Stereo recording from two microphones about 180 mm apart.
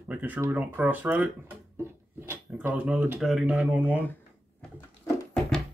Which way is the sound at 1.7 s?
15° right (ahead or behind).